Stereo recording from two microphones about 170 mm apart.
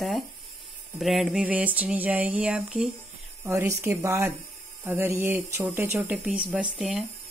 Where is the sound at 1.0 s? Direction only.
Centre (ahead or behind).